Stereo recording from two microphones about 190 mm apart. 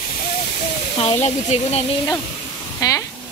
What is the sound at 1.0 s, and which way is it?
Speech, 35° left (ahead or behind).